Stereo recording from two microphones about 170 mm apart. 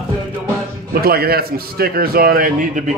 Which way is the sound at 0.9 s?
65° right (ahead or behind).